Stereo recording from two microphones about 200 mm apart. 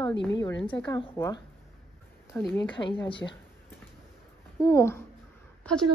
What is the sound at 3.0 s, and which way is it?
Speech, 25° left (ahead or behind).